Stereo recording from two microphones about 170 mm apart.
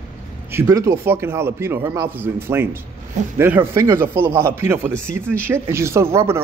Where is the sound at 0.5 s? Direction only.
15° right (ahead or behind).